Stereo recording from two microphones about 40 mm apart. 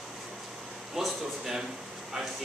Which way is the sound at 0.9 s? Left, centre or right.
Centre.